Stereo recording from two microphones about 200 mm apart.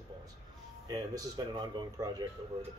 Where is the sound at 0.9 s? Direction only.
20° right (ahead or behind).